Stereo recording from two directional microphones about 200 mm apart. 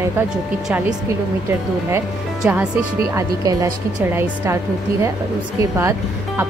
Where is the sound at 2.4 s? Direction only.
5° right (ahead or behind).